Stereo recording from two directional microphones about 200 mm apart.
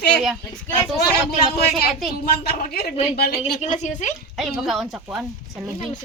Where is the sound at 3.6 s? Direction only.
35° left (ahead or behind).